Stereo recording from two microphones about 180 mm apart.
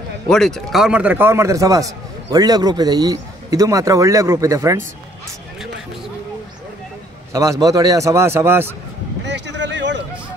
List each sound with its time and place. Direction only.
0.3 s a man's voice: 5° left (ahead or behind); by 4.8 s 15° right (ahead or behind)
7.6 s a man's voice: 20° right (ahead or behind)
9.2 s a sound: 75° right (ahead or behind)